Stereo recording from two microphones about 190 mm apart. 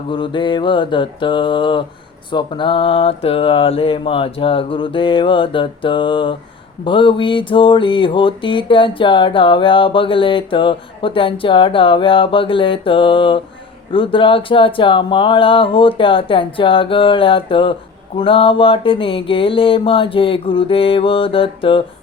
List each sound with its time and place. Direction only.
0.1 s music: 25° left (ahead or behind)